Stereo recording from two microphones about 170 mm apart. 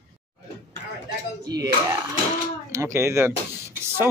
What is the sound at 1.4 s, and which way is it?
Speech, 20° right (ahead or behind).